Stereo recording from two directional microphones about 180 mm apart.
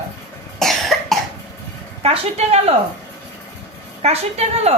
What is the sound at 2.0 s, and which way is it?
Speech, 35° right (ahead or behind).